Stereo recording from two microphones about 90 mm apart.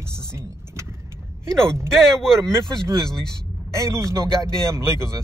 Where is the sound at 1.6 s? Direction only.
30° right (ahead or behind).